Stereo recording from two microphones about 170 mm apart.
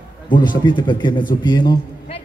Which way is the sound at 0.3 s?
25° left (ahead or behind).